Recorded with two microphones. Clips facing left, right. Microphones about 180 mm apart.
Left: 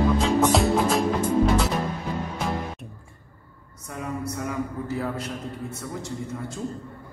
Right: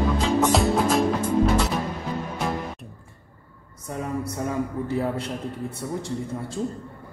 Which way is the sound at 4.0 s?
30° right (ahead or behind).